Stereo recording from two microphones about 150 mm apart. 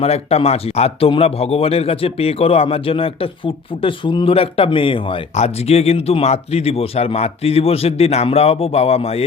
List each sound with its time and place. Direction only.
0.0 s a man's voice: 45° left (ahead or behind)